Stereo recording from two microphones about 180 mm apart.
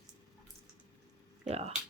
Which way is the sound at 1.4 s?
35° right (ahead or behind).